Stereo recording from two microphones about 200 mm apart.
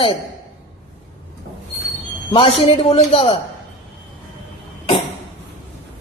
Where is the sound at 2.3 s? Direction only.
25° left (ahead or behind).